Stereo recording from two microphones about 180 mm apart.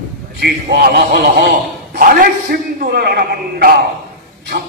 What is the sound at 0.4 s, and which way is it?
A man's voice, 70° right (ahead or behind).